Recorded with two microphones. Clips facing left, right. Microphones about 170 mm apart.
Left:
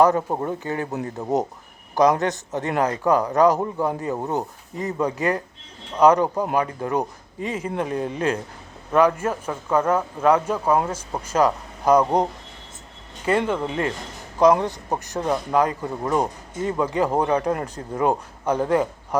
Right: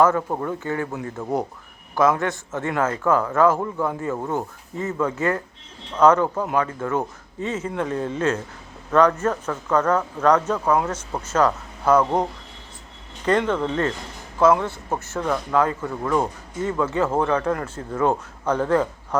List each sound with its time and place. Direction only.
0.0 s speech: 20° left (ahead or behind)
18.0 s speech: 10° left (ahead or behind)